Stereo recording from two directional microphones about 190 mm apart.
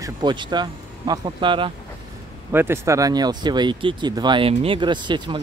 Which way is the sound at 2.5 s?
10° right (ahead or behind).